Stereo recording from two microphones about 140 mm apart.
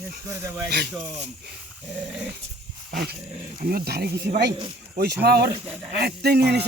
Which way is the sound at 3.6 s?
90° right.